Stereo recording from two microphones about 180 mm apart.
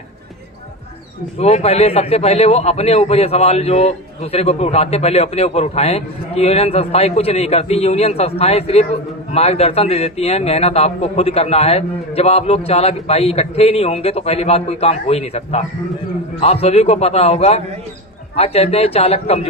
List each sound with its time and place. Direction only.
1.4 s a man's voice: 35° left (ahead or behind)